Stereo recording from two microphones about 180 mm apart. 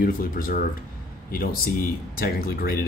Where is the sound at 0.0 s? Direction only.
50° left (ahead or behind).